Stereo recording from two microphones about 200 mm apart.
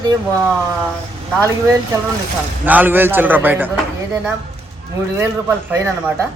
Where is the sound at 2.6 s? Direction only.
10° right (ahead or behind).